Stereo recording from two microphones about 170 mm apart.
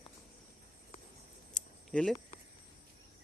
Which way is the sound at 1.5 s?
5° left (ahead or behind).